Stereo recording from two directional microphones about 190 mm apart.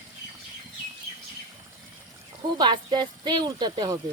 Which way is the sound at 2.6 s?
25° right (ahead or behind).